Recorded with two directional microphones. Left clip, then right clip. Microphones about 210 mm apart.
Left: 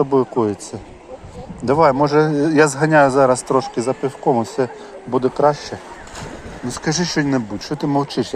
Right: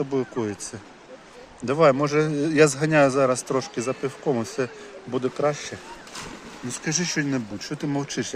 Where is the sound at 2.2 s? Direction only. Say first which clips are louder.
Left 7 dB; 30° right (ahead or behind).